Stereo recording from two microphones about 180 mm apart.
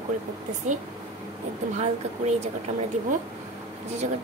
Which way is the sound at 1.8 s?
40° right (ahead or behind).